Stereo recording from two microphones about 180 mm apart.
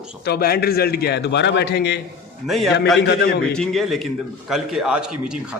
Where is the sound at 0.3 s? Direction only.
60° left (ahead or behind).